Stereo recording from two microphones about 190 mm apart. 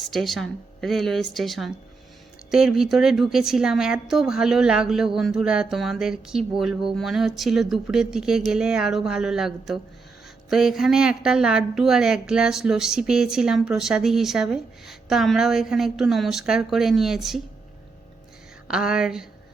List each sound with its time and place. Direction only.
0.0 s a woman's voice: centre (ahead or behind)
18.7 s a woman's voice: 5° right (ahead or behind)